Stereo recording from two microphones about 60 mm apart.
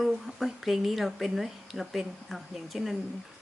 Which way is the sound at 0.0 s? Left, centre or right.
Centre.